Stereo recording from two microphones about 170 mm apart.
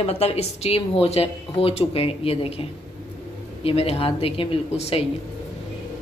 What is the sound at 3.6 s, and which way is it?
Speech, 35° left (ahead or behind).